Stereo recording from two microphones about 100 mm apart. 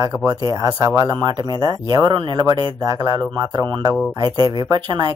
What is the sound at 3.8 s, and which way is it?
Speech, 40° right (ahead or behind).